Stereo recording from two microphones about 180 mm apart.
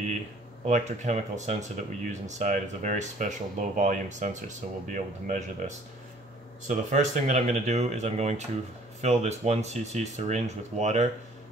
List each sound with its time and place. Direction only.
0.7 s speech: 40° right (ahead or behind)